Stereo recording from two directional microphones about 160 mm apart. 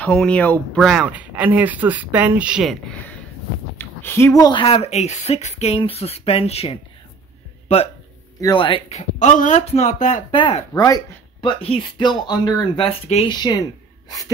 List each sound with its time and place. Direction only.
0.0 s speech: 5° left (ahead or behind)
3.7 s speech: 15° left (ahead or behind); by 7.9 s 40° left (ahead or behind)
8.4 s speech: 30° left (ahead or behind); by 10.2 s 50° left (ahead or behind)
10.3 s speech: 30° left (ahead or behind)
10.7 s speech: 20° left (ahead or behind)
12.8 s speech: 40° left (ahead or behind)
13.4 s speech: 25° left (ahead or behind)